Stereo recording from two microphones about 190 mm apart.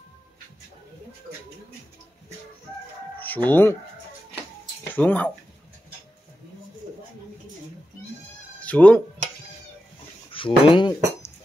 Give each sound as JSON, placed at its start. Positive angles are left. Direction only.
{"t": 3.2, "sound": "speech", "side_deg": 10}
{"t": 4.9, "sound": "speech", "side_deg": 10}
{"t": 8.5, "sound": "speech", "side_deg": 5}
{"t": 10.3, "sound": "speech", "side_deg": 25}